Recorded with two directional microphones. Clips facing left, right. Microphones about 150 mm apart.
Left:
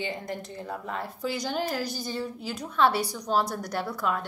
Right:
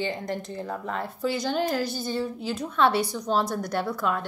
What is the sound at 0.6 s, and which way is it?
A woman's voice, 5° left (ahead or behind).